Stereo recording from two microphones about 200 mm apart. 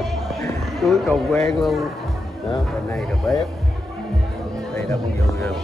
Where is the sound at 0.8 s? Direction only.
5° left (ahead or behind).